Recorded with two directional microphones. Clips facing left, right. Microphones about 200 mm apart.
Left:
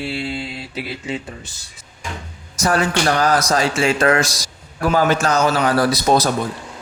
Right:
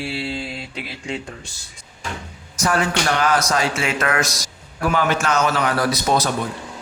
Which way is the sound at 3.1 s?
35° left (ahead or behind).